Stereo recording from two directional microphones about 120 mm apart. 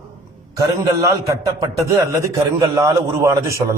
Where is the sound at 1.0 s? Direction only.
30° right (ahead or behind).